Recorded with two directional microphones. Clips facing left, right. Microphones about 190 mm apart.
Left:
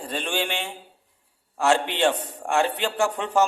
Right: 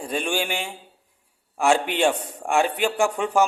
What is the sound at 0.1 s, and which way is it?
A man's voice, 10° right (ahead or behind).